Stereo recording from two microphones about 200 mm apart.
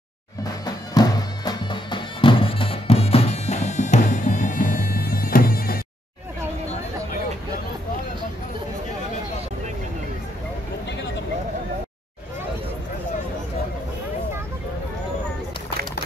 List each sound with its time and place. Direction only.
0.4 s music: 20° left (ahead or behind); by 5.8 s 45° left (ahead or behind)